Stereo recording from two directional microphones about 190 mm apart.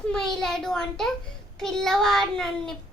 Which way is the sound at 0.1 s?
5° left (ahead or behind).